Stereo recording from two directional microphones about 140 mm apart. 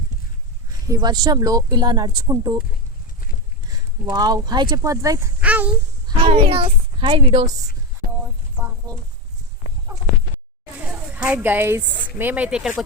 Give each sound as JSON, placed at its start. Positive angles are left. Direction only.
{"t": 0.7, "sound": "speech", "side_deg": -25}
{"t": 3.7, "sound": "speech", "side_deg": -30}
{"t": 5.4, "sound": "speech", "side_deg": -10}
{"t": 6.1, "sound": "a woman's voice", "side_deg": -40}
{"t": 8.2, "sound": "a sound", "side_deg": -15}
{"t": 9.9, "sound": "a sound", "side_deg": -25}
{"t": 11.3, "sound": "a woman's voice", "side_deg": -15}